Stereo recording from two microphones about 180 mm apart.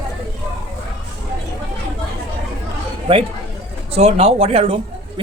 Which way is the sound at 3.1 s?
30° right (ahead or behind).